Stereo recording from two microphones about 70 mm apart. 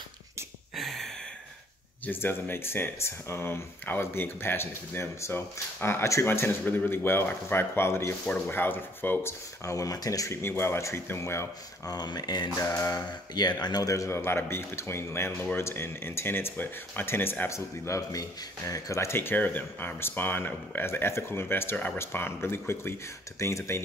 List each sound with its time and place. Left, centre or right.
0.7 s a sound: centre
2.0 s speech: left
9.7 s speech: left
10.3 s speech: left
11.8 s speech: left
12.5 s speech: left
13.3 s speech: left
13.8 s speech: left